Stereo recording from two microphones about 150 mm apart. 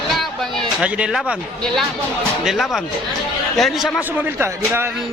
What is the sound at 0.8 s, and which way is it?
Speech, 5° right (ahead or behind).